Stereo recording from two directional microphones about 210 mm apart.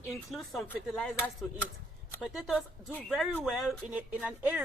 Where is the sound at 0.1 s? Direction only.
Centre (ahead or behind).